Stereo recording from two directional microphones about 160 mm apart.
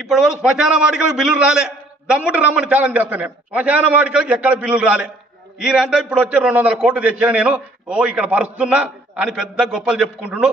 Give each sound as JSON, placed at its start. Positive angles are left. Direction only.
{"t": 0.1, "sound": "a man's voice", "side_deg": -5}